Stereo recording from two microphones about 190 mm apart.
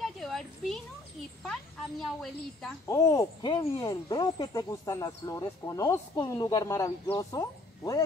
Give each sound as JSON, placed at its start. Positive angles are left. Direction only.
{"t": 0.0, "sound": "a sound", "side_deg": 0}
{"t": 1.4, "sound": "speech", "side_deg": 0}
{"t": 2.9, "sound": "speech", "side_deg": 15}